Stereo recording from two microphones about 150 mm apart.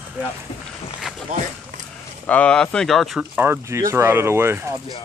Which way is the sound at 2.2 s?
10° left (ahead or behind).